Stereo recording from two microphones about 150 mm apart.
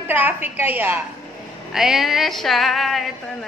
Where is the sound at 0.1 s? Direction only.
15° right (ahead or behind).